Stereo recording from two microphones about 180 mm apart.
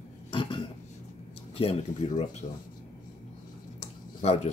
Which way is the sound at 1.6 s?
30° left (ahead or behind).